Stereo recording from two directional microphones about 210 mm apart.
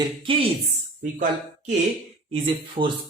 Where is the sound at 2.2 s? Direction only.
25° right (ahead or behind).